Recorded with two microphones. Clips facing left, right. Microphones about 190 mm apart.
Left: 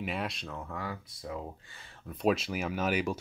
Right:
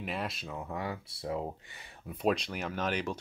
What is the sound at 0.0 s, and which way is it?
Speech, centre (ahead or behind).